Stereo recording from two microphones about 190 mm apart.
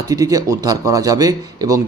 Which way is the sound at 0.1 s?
20° right (ahead or behind).